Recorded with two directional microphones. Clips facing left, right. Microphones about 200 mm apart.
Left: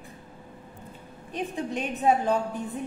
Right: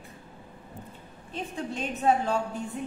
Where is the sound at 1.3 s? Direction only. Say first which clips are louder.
Left 3 dB; 15° left (ahead or behind).